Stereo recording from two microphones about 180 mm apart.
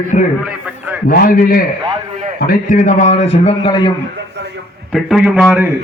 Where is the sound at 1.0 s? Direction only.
50° left (ahead or behind); by 3.9 s 25° left (ahead or behind).